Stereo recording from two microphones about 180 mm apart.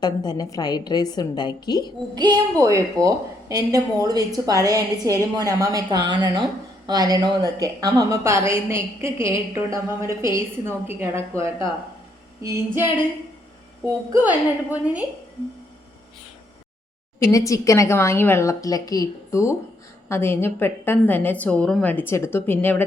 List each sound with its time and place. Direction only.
0.0 s a woman's voice: 20° left (ahead or behind)
2.1 s a woman's voice: 25° right (ahead or behind); by 15.0 s 10° right (ahead or behind)
17.3 s a woman's voice: 20° left (ahead or behind)